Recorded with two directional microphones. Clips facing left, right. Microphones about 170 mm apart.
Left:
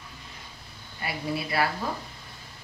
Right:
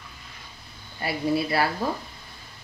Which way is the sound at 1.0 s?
35° right (ahead or behind).